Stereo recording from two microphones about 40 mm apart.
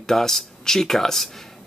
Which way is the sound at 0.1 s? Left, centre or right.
Centre.